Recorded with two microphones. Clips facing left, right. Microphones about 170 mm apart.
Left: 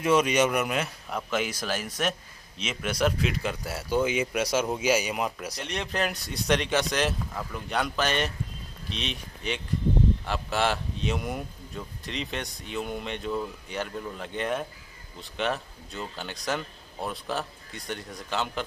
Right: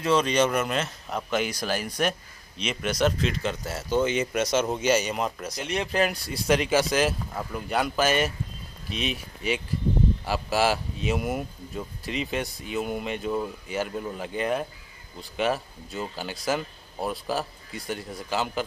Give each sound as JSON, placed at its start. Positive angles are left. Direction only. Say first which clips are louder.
{"t": 0.0, "sound": "a man's voice", "louder": "even", "side_deg": 15}
{"t": 5.6, "sound": "a man's voice", "louder": "right 5 dB", "side_deg": -5}